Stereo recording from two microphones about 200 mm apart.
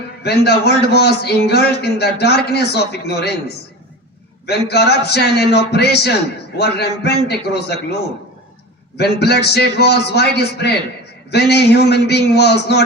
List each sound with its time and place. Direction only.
0.2 s a man's voice: 55° left (ahead or behind)
9.0 s a man's voice: 55° left (ahead or behind)